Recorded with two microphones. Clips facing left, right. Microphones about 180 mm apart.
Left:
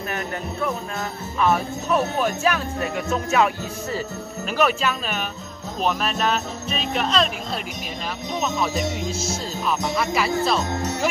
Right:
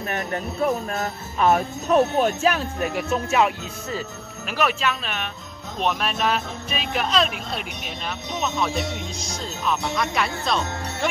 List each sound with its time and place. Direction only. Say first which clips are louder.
1.4 s speech: right 1 dB; 40° right (ahead or behind)
4.6 s speech: left 2 dB; centre (ahead or behind)
8.4 s speech: left 1 dB; 5° left (ahead or behind)